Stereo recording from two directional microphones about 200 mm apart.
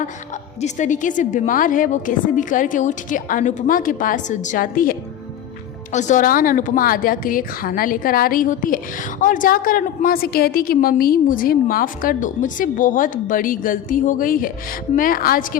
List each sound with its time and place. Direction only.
0.6 s a woman's voice: 40° left (ahead or behind)